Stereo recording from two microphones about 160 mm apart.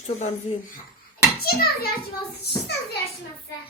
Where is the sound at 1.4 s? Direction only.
80° left.